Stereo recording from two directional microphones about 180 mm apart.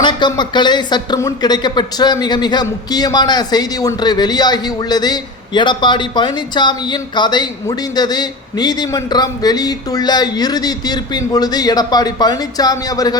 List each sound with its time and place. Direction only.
0.0 s speech: 25° left (ahead or behind)